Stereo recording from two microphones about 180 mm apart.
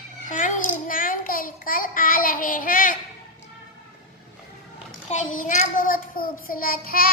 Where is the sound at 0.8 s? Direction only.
50° left (ahead or behind).